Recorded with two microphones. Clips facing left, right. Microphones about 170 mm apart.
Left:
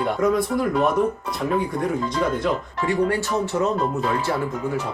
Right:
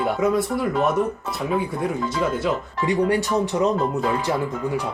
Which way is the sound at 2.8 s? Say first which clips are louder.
Right 1 dB; 15° right (ahead or behind).